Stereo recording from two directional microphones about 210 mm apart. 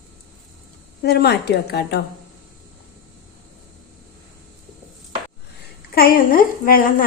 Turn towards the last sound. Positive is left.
turn(degrees=40)  # may be behind; listen again after turning